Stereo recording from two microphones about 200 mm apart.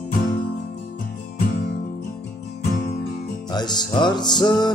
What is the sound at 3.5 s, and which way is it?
Music, 20° left (ahead or behind).